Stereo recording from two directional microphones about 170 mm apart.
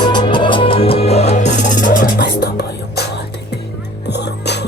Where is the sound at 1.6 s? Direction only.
50° left (ahead or behind).